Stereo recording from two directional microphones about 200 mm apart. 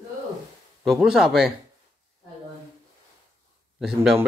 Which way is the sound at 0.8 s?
Centre (ahead or behind).